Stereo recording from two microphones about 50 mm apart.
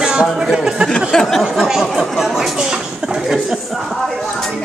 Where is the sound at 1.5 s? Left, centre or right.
Centre.